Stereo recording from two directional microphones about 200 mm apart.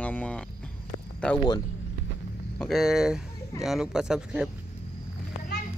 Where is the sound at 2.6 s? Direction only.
Centre (ahead or behind).